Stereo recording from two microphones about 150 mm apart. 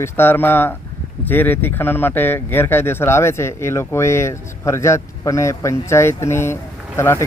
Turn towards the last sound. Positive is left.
turn(degrees=15)  # may be behind; listen again after turning